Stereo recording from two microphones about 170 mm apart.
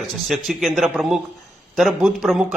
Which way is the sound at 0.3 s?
Centre (ahead or behind).